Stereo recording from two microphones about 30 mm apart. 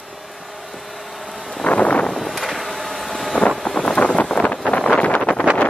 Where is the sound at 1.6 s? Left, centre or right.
Left.